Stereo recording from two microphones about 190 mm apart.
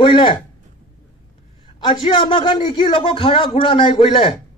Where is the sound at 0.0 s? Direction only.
25° left (ahead or behind).